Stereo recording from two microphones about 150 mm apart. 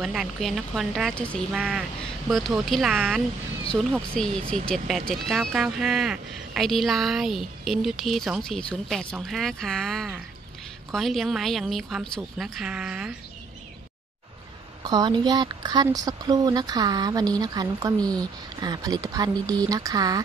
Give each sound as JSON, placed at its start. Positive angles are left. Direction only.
{"t": 0.0, "sound": "a woman's voice", "side_deg": 0}
{"t": 1.6, "sound": "a woman's voice", "side_deg": -5}
{"t": 4.2, "sound": "a woman's voice", "side_deg": 5}
{"t": 14.8, "sound": "speech", "side_deg": -25}